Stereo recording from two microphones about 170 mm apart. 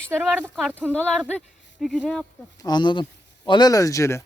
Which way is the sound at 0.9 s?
Centre (ahead or behind).